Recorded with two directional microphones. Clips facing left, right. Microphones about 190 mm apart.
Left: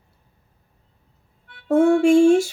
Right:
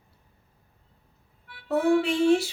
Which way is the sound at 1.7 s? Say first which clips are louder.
Left 8 dB; 45° left (ahead or behind).